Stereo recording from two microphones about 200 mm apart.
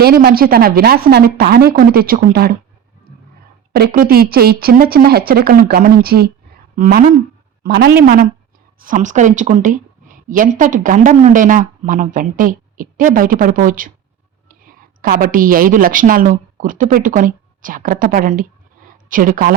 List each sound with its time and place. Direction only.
0.0 s speech: 50° right (ahead or behind)
3.7 s a woman's voice: 45° right (ahead or behind)